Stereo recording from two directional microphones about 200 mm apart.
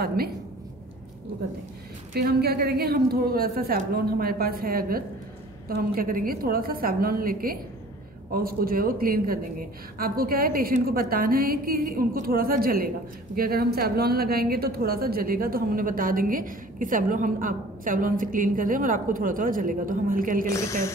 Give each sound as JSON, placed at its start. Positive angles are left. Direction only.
{"t": 0.0, "sound": "a woman's voice", "side_deg": -50}
{"t": 2.1, "sound": "a woman's voice", "side_deg": -50}
{"t": 20.4, "sound": "a woman's voice", "side_deg": 15}